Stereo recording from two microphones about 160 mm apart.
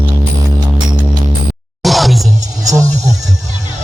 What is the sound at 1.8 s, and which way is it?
Music, centre (ahead or behind).